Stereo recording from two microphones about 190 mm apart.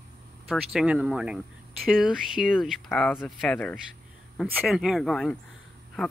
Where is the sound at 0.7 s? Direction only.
5° right (ahead or behind).